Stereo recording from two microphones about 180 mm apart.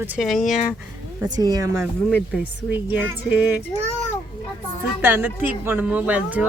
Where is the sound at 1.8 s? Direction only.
Centre (ahead or behind).